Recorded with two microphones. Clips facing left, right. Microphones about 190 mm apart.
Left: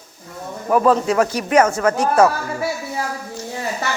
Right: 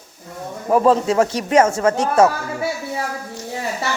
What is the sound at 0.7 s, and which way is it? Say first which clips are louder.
Speech: right 1 dB; 25° right (ahead or behind).